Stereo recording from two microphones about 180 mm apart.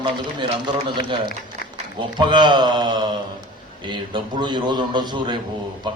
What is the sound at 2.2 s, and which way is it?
A man's voice, 25° right (ahead or behind).